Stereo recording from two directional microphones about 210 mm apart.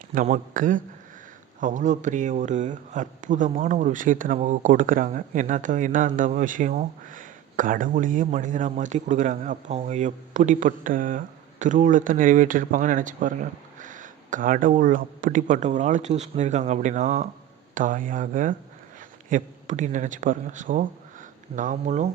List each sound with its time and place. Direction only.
0.1 s speech: 40° right (ahead or behind)